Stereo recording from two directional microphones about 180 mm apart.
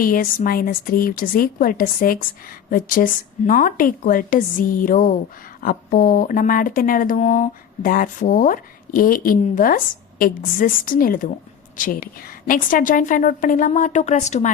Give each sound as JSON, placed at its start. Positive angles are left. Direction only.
{"t": 0.0, "sound": "speech", "side_deg": 50}